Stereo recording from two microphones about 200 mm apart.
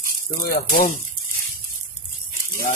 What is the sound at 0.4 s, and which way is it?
Speech, 40° left (ahead or behind).